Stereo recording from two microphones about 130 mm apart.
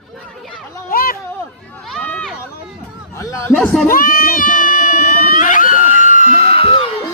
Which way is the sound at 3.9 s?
90° left.